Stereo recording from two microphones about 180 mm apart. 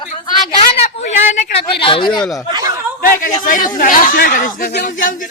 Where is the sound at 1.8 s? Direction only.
30° left (ahead or behind).